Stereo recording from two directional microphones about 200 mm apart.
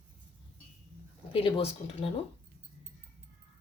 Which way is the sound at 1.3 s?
30° left (ahead or behind).